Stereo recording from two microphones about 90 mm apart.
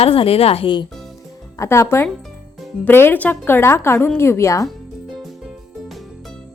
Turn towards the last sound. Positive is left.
turn(degrees=35)  # may be behind; listen again after turning